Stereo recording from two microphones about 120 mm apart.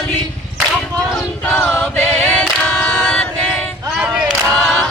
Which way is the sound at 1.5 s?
20° left (ahead or behind).